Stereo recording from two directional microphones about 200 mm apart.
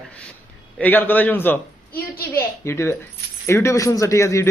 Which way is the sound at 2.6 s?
15° left (ahead or behind).